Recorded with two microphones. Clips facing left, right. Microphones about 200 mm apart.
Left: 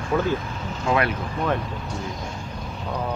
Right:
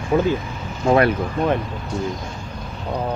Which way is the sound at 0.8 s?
40° right (ahead or behind).